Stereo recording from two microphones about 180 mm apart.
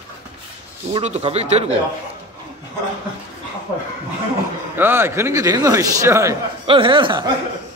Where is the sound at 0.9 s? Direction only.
35° right (ahead or behind).